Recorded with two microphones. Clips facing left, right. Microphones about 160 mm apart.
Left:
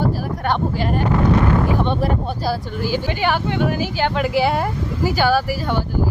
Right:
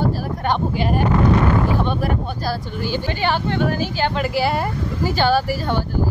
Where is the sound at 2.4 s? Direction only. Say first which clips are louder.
Left 2 dB; 5° left (ahead or behind).